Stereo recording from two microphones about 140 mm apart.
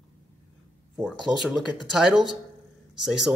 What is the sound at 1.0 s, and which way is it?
A man's voice, centre (ahead or behind).